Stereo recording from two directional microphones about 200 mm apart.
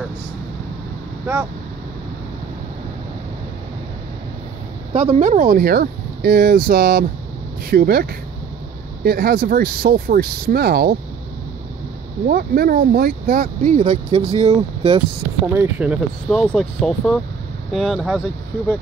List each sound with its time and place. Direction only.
4.9 s speech: 35° right (ahead or behind); by 11.0 s 50° right (ahead or behind)
12.3 s speech: 50° right (ahead or behind); by 15.0 s 30° right (ahead or behind)
15.4 s speech: 10° right (ahead or behind)
16.3 s speech: centre (ahead or behind)